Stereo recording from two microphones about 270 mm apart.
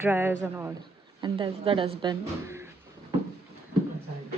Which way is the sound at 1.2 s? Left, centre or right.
Centre.